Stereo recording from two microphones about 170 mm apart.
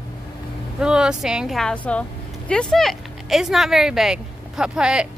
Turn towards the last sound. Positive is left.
turn(degrees=-5)  # may be behind; listen again after turning